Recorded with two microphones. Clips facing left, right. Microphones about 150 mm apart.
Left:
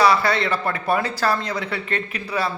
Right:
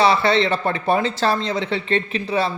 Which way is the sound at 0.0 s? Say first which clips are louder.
Right 2 dB; 25° right (ahead or behind).